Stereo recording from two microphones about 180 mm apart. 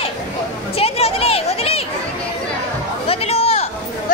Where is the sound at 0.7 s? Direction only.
35° left (ahead or behind).